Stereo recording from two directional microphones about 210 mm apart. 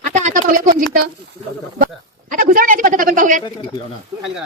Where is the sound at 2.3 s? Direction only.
40° right (ahead or behind).